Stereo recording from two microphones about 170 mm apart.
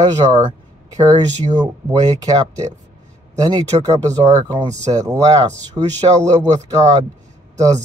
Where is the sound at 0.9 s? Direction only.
20° right (ahead or behind).